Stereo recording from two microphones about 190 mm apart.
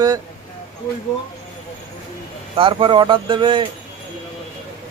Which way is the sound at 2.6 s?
25° right (ahead or behind).